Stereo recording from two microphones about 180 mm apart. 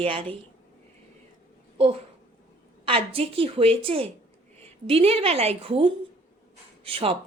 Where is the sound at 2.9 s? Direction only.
30° right (ahead or behind).